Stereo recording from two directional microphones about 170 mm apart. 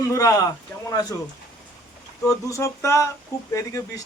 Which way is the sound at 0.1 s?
20° left (ahead or behind).